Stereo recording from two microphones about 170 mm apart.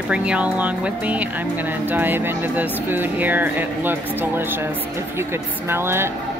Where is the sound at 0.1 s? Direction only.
5° right (ahead or behind).